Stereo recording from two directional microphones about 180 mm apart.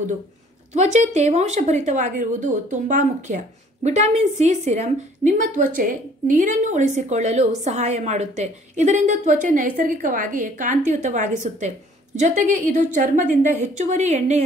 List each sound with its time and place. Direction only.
0.7 s a woman's voice: 40° right (ahead or behind)